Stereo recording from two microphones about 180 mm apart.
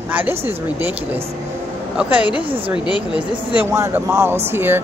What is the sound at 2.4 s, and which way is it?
Speech, 30° right (ahead or behind).